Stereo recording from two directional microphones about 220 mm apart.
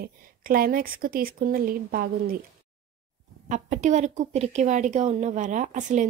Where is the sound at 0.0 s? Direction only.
40° right (ahead or behind).